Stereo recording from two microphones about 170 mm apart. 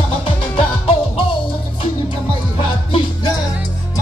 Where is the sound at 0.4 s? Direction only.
35° left (ahead or behind).